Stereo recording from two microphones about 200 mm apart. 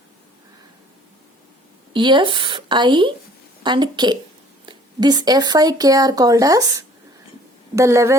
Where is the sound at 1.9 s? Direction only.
25° right (ahead or behind).